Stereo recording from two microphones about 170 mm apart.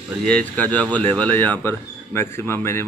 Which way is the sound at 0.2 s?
5° left (ahead or behind).